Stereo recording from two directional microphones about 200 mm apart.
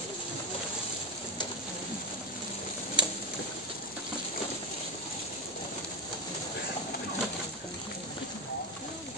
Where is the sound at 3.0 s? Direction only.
25° right (ahead or behind).